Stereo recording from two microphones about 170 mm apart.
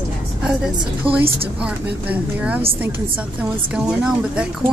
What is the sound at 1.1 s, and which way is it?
A woman's voice, 5° right (ahead or behind).